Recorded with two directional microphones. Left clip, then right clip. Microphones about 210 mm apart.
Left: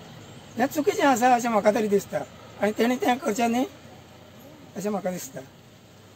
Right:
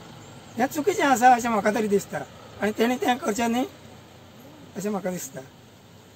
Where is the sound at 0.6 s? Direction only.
15° right (ahead or behind).